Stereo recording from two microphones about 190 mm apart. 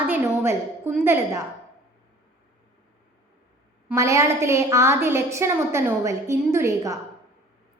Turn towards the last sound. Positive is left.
turn(degrees=-15)  # may be behind; listen again after turning